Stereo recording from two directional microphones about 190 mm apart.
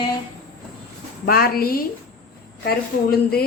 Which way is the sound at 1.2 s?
50° left (ahead or behind).